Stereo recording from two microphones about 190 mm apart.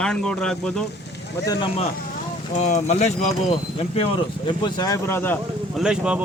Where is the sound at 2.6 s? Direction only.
35° left (ahead or behind).